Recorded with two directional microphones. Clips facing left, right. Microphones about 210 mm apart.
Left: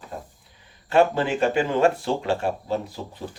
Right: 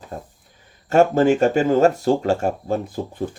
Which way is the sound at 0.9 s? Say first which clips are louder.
Right 5 dB; 45° right (ahead or behind).